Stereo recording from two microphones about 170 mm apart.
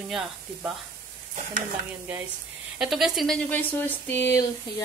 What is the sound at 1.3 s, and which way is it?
Stir, 45° right (ahead or behind).